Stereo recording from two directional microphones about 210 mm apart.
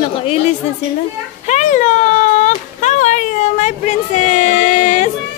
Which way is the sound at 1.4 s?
35° left (ahead or behind).